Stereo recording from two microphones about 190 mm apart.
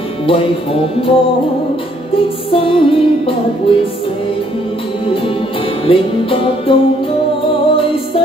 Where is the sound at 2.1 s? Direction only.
30° left (ahead or behind).